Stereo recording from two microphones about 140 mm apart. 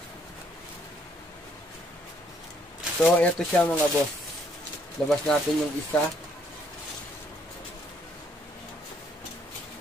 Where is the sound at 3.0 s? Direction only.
10° left (ahead or behind).